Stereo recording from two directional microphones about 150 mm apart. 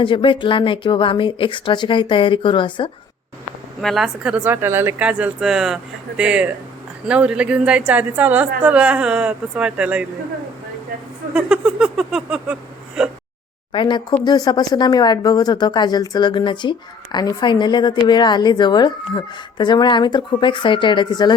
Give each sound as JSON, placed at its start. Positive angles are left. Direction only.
{"t": 0.0, "sound": "speech", "side_deg": 35}
{"t": 3.8, "sound": "speech", "side_deg": 0}
{"t": 11.3, "sound": "a sound", "side_deg": -5}
{"t": 13.0, "sound": "speech", "side_deg": -5}
{"t": 13.7, "sound": "speech", "side_deg": 30}